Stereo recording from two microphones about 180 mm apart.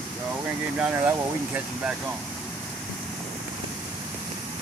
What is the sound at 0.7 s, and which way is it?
Speech, 5° right (ahead or behind).